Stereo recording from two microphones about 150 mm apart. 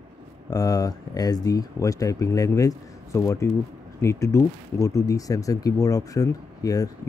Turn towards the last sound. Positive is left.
turn(degrees=25)  # may be behind; listen again after turning